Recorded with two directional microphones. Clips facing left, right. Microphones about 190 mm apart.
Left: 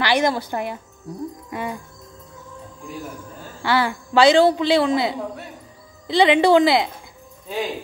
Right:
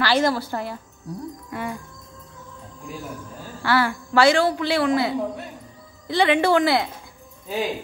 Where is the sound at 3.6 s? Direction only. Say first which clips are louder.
Left 1 dB; 20° left (ahead or behind).